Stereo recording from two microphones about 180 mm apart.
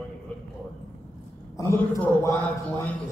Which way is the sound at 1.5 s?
15° left (ahead or behind).